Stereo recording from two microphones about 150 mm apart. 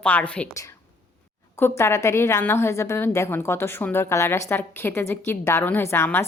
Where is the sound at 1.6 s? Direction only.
20° left (ahead or behind).